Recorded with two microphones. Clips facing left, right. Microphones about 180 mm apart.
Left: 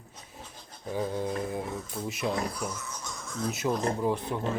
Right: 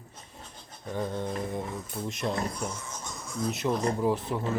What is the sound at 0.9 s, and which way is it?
Speech, 5° left (ahead or behind).